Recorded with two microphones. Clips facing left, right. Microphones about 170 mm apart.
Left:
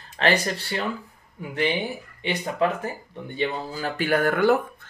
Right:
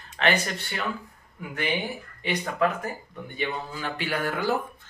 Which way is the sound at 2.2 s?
30° left (ahead or behind).